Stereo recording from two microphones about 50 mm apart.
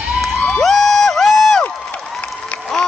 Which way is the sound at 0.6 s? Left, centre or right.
Centre.